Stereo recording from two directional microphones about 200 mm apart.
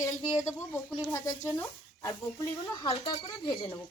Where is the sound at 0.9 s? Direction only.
5° left (ahead or behind).